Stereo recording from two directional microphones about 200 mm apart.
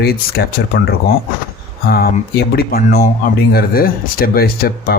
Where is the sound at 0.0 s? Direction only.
50° left (ahead or behind).